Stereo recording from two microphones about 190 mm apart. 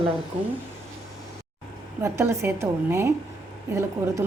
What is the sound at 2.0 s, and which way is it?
A woman's voice, 15° right (ahead or behind).